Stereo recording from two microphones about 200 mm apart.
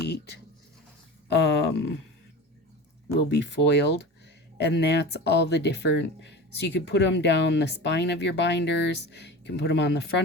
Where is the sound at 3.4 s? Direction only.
60° left (ahead or behind).